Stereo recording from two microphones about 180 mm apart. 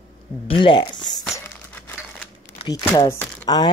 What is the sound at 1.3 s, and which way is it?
Crumpling, 10° left (ahead or behind).